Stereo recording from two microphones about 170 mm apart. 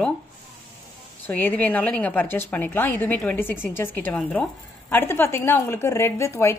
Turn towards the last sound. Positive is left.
turn(degrees=15)  # may be behind; listen again after turning